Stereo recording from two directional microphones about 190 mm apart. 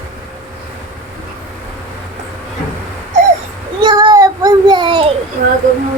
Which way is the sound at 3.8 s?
20° right (ahead or behind).